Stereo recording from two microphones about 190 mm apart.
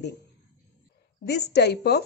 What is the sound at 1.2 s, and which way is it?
Speech, 60° left (ahead or behind).